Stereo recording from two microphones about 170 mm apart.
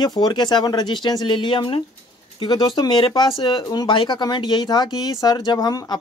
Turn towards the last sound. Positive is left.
turn(degrees=20)  # may be behind; listen again after turning